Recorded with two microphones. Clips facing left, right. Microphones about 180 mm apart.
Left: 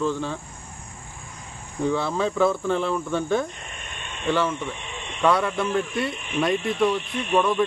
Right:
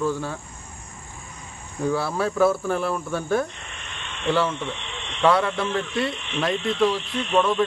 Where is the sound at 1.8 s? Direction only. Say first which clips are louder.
Even; 5° right (ahead or behind).